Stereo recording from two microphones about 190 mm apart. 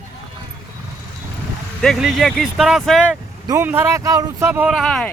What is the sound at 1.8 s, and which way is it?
Speech, centre (ahead or behind).